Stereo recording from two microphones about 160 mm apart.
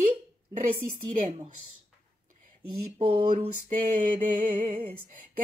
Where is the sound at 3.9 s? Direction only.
55° right (ahead or behind).